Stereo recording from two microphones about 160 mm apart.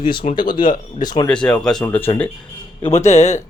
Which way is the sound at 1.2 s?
5° left (ahead or behind).